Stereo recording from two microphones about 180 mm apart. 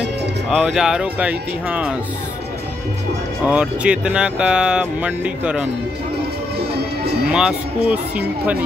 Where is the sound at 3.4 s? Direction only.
5° right (ahead or behind).